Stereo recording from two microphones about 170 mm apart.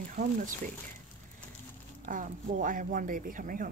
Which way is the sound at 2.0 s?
50° right (ahead or behind).